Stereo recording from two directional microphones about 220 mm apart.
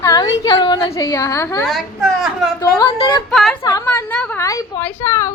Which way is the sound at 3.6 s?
10° left (ahead or behind).